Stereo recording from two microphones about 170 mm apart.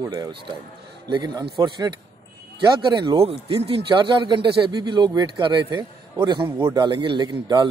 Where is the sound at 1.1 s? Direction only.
25° right (ahead or behind).